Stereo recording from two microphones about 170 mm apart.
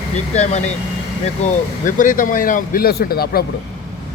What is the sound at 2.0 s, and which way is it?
Speech, 50° left (ahead or behind).